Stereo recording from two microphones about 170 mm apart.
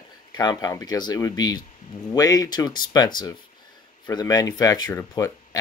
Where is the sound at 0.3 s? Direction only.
25° left (ahead or behind).